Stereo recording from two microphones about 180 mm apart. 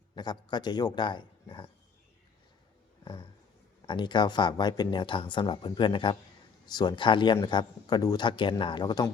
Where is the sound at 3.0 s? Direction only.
25° left (ahead or behind).